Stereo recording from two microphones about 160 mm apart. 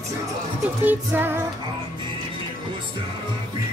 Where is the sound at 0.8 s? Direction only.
10° right (ahead or behind).